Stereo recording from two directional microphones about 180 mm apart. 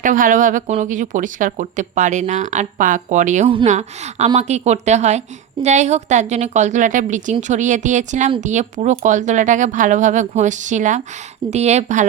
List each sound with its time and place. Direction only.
0.0 s a woman's voice: 45° right (ahead or behind)